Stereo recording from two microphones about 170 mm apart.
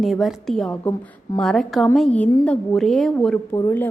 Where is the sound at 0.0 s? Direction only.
Centre (ahead or behind).